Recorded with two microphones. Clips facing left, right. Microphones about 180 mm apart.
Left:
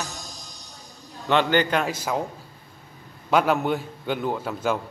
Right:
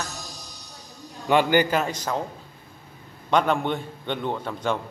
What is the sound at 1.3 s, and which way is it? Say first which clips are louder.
Speech: right 1 dB; 10° right (ahead or behind).